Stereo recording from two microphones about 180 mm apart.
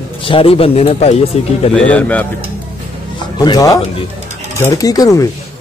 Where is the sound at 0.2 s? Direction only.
30° left (ahead or behind).